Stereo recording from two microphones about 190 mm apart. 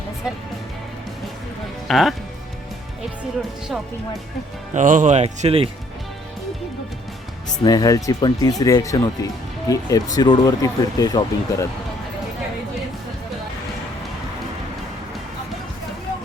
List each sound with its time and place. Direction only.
1.9 s speech: centre (ahead or behind)
4.7 s speech: 40° right (ahead or behind)
7.6 s speech: 20° left (ahead or behind)